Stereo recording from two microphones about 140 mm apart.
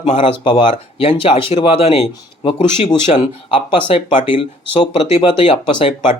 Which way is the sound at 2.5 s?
60° left (ahead or behind).